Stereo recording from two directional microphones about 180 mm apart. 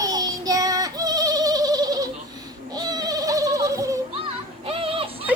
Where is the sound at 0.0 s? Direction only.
20° right (ahead or behind).